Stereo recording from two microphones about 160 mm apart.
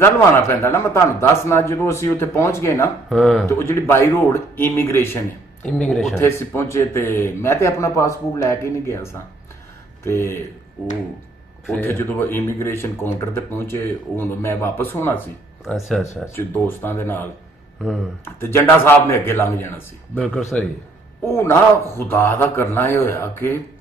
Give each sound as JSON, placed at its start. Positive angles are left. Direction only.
{"t": 0.0, "sound": "speech", "side_deg": 15}
{"t": 3.1, "sound": "speech", "side_deg": 0}
{"t": 3.4, "sound": "speech", "side_deg": 15}
{"t": 6.1, "sound": "speech", "side_deg": 15}
{"t": 11.8, "sound": "speech", "side_deg": 15}
{"t": 15.6, "sound": "speech", "side_deg": 0}
{"t": 16.3, "sound": "speech", "side_deg": 15}